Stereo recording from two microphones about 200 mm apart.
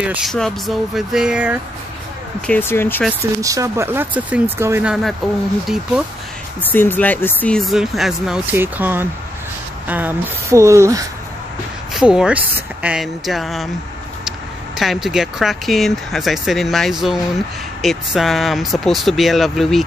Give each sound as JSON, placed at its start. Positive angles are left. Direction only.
{"t": 0.0, "sound": "speech", "side_deg": -5}
{"t": 2.4, "sound": "speech", "side_deg": 10}
{"t": 3.1, "sound": "speech", "side_deg": -15}
{"t": 6.6, "sound": "speech", "side_deg": 10}
{"t": 11.9, "sound": "speech", "side_deg": -5}
{"t": 14.8, "sound": "speech", "side_deg": 0}